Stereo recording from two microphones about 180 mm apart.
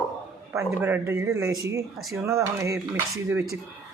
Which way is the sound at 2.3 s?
15° right (ahead or behind).